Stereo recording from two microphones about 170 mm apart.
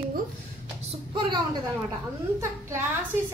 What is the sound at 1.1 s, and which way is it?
Speech, 30° right (ahead or behind).